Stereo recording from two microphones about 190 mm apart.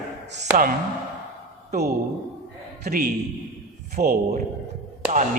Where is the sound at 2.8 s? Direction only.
50° right (ahead or behind).